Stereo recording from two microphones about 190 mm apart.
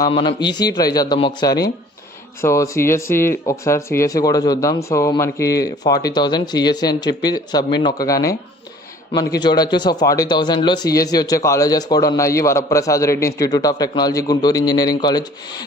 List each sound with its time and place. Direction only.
0.0 s a man's voice: 25° left (ahead or behind)
9.4 s a man's voice: 25° left (ahead or behind)